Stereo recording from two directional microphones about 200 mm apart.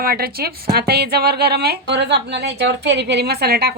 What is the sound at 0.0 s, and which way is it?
A woman's voice, 50° right (ahead or behind).